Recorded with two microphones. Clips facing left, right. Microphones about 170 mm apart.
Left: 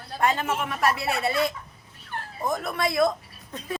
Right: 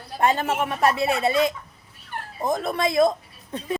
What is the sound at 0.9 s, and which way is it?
A woman's voice, 20° right (ahead or behind).